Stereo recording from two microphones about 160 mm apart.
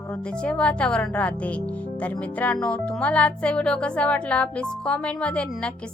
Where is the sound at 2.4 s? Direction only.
10° left (ahead or behind).